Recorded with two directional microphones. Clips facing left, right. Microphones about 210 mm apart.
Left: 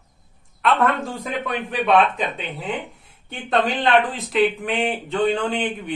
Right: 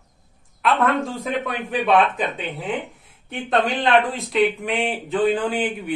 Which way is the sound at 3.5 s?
Centre (ahead or behind).